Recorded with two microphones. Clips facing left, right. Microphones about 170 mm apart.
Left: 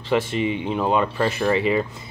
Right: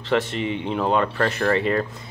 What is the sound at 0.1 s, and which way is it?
Speech, 5° left (ahead or behind).